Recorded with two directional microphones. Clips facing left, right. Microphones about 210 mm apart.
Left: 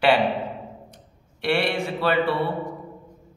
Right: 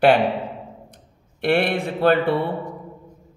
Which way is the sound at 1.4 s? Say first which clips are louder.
Right 3 dB; 55° right (ahead or behind).